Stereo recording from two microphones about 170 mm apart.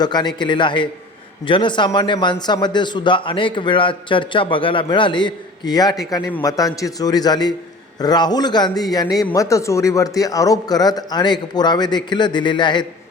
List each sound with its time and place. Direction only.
0.0 s a man's voice: 25° left (ahead or behind)